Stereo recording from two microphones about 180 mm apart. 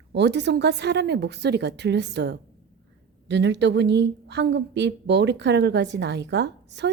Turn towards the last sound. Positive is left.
turn(degrees=-70)  # may be behind; listen again after turning